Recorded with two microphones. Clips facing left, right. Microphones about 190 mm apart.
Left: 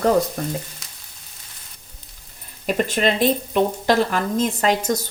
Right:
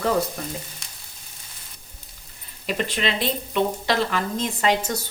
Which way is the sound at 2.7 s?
45° left (ahead or behind).